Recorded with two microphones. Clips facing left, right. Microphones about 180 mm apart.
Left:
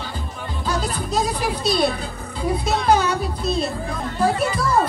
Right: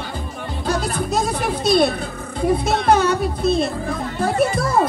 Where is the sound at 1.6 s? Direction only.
50° right (ahead or behind).